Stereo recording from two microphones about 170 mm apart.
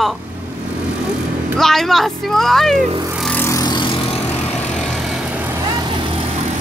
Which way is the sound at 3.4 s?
20° left (ahead or behind).